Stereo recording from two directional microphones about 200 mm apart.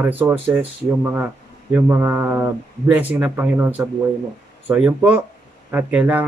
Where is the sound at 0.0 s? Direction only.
10° right (ahead or behind).